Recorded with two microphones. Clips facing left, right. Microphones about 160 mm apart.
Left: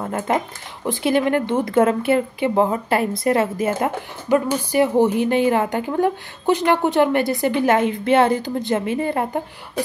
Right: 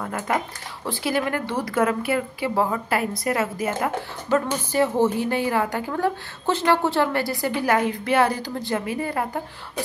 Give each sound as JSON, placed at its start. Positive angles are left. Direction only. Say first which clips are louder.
{"t": 0.0, "sound": "a woman's voice", "louder": "left 4 dB", "side_deg": 25}
{"t": 4.3, "sound": "a woman's voice", "louder": "left 4 dB", "side_deg": 15}